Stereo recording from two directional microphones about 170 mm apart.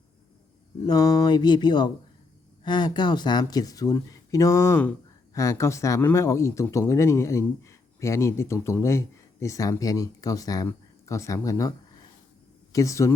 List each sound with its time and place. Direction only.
0.9 s speech: 20° left (ahead or behind)
12.7 s speech: 20° left (ahead or behind)